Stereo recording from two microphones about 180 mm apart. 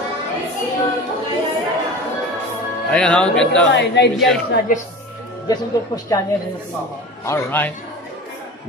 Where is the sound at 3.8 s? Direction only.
75° left (ahead or behind).